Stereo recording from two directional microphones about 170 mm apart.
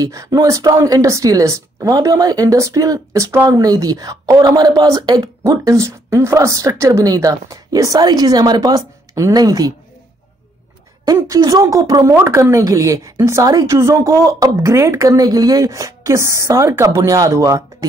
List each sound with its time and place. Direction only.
0.0 s speech: 20° right (ahead or behind)
11.1 s speech: 20° right (ahead or behind)